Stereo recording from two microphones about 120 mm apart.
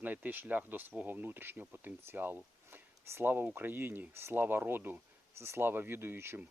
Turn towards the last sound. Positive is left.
turn(degrees=-20)  # may be behind; listen again after turning